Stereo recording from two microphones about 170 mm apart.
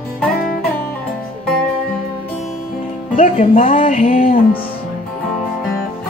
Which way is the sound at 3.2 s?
45° left (ahead or behind).